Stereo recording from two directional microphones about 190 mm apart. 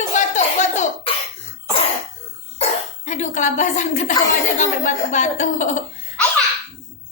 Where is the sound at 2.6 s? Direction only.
40° left (ahead or behind).